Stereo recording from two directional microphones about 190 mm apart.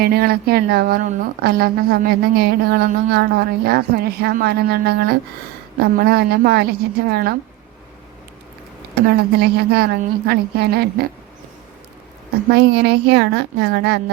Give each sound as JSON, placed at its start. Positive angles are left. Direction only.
{"t": 0.0, "sound": "a woman's voice", "side_deg": -55}
{"t": 9.0, "sound": "a woman's voice", "side_deg": -55}
{"t": 12.5, "sound": "a woman's voice", "side_deg": -60}